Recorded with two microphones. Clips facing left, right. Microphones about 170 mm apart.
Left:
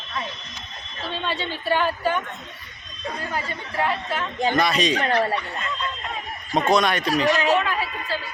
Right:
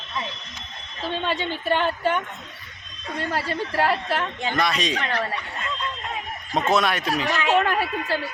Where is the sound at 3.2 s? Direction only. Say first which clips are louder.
Right 7 dB; 75° right (ahead or behind).